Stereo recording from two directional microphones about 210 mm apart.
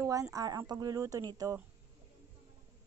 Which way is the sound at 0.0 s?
15° right (ahead or behind).